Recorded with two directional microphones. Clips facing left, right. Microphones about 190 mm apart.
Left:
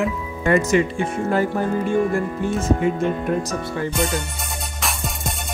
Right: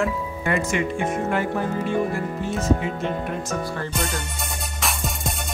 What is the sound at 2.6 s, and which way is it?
Speech, 50° left (ahead or behind).